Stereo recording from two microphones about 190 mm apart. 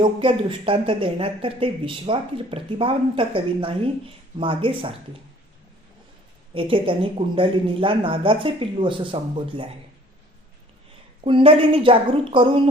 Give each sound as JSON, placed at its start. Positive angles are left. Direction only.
{"t": 0.0, "sound": "speech", "side_deg": -25}
{"t": 6.5, "sound": "speech", "side_deg": -30}
{"t": 11.2, "sound": "speech", "side_deg": -30}